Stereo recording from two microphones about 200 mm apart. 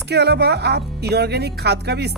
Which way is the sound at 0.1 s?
55° right (ahead or behind).